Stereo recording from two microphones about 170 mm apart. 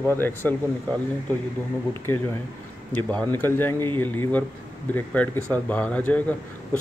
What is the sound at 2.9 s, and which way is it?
Speech, 5° left (ahead or behind).